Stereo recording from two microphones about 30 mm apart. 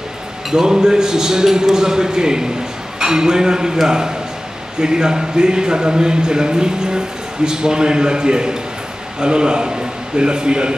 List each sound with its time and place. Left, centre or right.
0.5 s speech: centre